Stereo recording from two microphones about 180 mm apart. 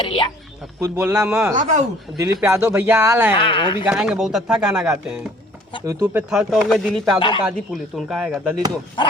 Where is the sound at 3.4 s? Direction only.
30° left (ahead or behind).